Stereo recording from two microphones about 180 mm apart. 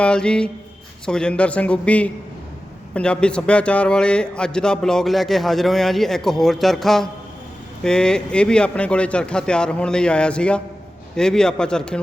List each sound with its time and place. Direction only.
0.0 s a man's voice: 5° left (ahead or behind)